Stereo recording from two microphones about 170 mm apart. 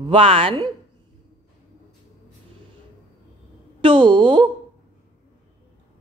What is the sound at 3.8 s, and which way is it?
Speech, 30° right (ahead or behind).